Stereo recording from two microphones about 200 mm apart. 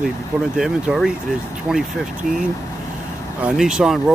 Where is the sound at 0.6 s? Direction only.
Centre (ahead or behind).